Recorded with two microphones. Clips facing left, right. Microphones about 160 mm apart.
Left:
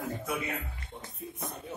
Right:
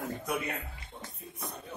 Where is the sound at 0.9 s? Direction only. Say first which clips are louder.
Even; 20° left (ahead or behind).